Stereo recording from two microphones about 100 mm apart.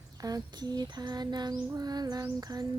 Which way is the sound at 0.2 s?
40° right (ahead or behind).